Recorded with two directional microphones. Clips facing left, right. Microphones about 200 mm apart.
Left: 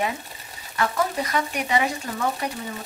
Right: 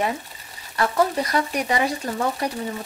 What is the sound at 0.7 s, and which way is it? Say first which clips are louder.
Speech: right 4 dB; 35° right (ahead or behind).